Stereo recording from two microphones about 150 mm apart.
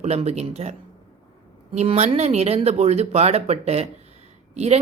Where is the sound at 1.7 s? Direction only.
45° right (ahead or behind).